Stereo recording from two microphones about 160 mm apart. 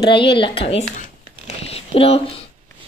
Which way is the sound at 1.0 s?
40° left (ahead or behind).